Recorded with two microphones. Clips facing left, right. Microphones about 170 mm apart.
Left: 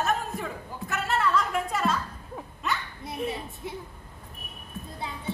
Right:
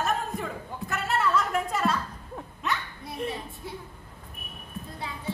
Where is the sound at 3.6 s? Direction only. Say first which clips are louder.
Left 3 dB; 20° left (ahead or behind).